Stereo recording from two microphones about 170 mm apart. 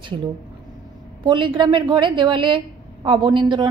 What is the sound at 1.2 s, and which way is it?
A woman's voice, 30° right (ahead or behind).